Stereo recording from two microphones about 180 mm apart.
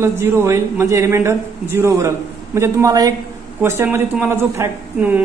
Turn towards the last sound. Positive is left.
turn(degrees=-10)  # may be behind; listen again after turning